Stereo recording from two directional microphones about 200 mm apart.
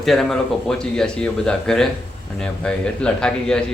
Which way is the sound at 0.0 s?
Centre (ahead or behind).